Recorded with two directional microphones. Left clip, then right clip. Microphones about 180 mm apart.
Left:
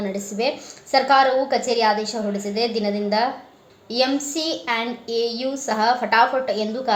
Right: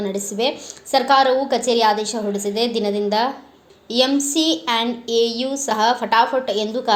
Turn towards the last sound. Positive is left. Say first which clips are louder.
# right 2 dB
turn(degrees=-35)  # may be behind; listen again after turning